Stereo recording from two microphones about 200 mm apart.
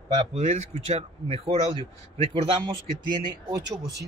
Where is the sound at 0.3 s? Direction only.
35° right (ahead or behind).